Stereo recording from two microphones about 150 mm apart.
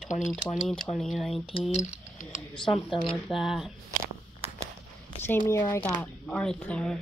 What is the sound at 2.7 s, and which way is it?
A woman's voice, centre (ahead or behind).